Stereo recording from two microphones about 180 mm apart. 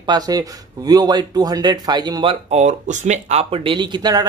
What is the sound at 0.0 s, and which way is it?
Speech, 20° right (ahead or behind).